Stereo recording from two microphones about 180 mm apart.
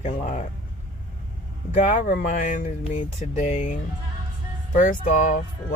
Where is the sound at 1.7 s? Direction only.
45° left (ahead or behind).